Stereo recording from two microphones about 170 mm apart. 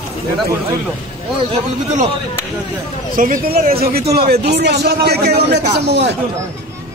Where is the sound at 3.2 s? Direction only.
55° right (ahead or behind); by 6.1 s 85° right.